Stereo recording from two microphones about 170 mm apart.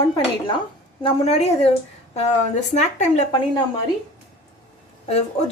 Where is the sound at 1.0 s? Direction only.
40° left (ahead or behind).